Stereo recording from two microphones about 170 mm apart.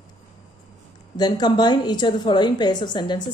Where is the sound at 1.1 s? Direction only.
25° left (ahead or behind).